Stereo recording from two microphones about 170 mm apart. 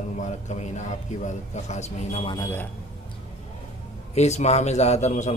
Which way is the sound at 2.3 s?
15° left (ahead or behind).